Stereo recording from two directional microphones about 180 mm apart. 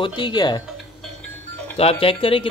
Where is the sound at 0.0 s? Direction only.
25° left (ahead or behind).